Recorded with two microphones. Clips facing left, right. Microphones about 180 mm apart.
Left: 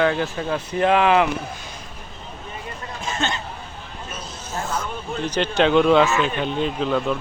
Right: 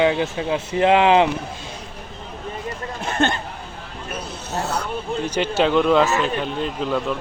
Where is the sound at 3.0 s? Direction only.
60° right (ahead or behind).